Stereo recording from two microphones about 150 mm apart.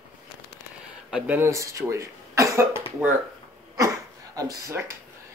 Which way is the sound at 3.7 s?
20° right (ahead or behind).